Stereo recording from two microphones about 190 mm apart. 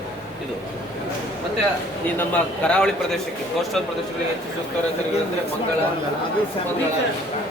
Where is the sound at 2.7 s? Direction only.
5° left (ahead or behind).